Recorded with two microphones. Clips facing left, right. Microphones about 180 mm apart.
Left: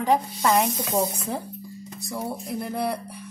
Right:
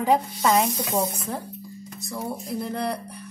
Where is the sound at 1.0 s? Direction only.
20° left (ahead or behind).